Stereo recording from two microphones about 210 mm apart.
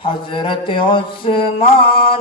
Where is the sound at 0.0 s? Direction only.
25° left (ahead or behind).